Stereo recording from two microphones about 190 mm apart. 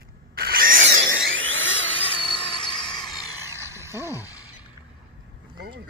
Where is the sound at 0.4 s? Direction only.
50° right (ahead or behind).